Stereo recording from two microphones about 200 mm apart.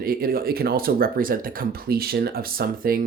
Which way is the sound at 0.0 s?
45° right (ahead or behind).